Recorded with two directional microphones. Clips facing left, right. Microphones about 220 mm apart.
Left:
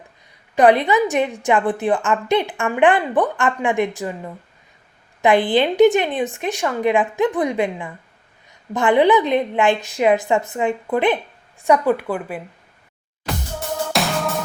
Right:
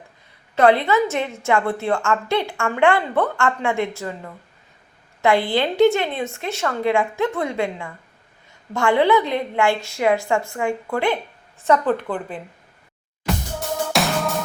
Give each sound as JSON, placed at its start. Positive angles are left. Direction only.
{"t": 0.5, "sound": "a woman's voice", "side_deg": 15}
{"t": 13.2, "sound": "music", "side_deg": 0}